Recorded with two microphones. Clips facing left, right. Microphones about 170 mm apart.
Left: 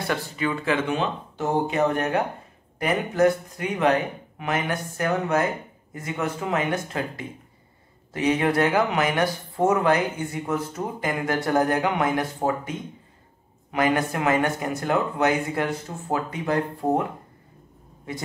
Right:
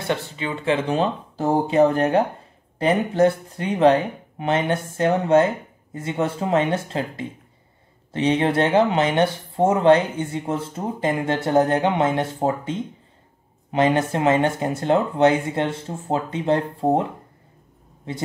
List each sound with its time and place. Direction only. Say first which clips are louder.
0.0 s speech: right 1 dB; 25° right (ahead or behind)